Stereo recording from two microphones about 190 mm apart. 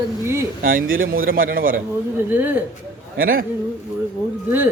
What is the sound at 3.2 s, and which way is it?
Speech, 50° right (ahead or behind).